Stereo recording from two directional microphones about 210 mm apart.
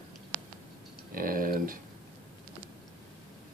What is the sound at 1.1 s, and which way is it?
Speech, 40° right (ahead or behind).